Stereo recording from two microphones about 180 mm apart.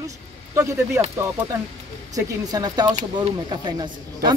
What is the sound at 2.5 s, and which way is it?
Speech, 20° right (ahead or behind).